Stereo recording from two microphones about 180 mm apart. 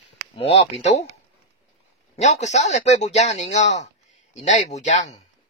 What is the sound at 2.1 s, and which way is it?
Speech, 40° left (ahead or behind).